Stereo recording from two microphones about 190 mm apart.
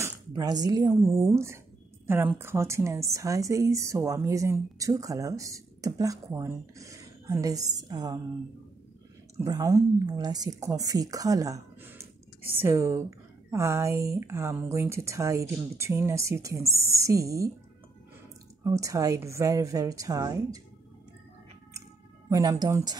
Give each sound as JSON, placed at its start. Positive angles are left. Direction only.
{"t": 0.0, "sound": "a woman's voice", "side_deg": -20}
{"t": 9.4, "sound": "a woman's voice", "side_deg": -15}
{"t": 18.6, "sound": "a woman's voice", "side_deg": -15}
{"t": 22.3, "sound": "a woman's voice", "side_deg": -20}